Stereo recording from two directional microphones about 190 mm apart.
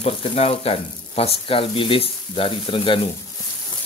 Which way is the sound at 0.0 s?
30° left (ahead or behind).